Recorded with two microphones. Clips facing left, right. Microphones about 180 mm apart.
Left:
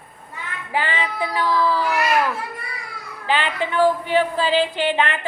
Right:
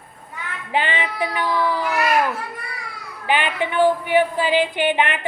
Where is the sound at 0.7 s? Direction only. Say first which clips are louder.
Right 1 dB; 20° right (ahead or behind).